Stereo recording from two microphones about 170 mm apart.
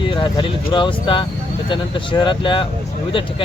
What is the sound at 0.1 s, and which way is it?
Speech, 30° left (ahead or behind).